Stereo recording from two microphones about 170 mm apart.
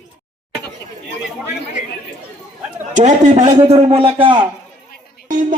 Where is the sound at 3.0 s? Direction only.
45° right (ahead or behind).